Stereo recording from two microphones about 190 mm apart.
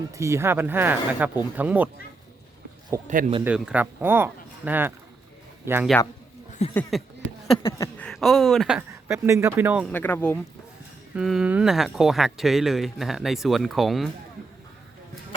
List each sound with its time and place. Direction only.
0.1 s speech: 15° right (ahead or behind)
3.1 s speech: 40° right (ahead or behind)
3.4 s speech: 5° right (ahead or behind)
6.6 s a sound: 35° left (ahead or behind)
7.7 s speech: 15° left (ahead or behind)
8.0 s speech: centre (ahead or behind)
8.9 s speech: 15° right (ahead or behind)
9.8 s speech: 10° left (ahead or behind)
11.1 s speech: 5° right (ahead or behind)